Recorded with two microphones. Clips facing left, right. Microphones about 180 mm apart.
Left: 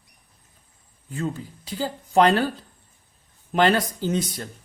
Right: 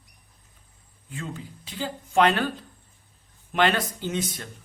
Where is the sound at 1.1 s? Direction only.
40° left (ahead or behind).